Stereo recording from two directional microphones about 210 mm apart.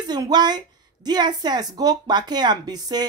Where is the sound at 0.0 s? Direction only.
20° right (ahead or behind).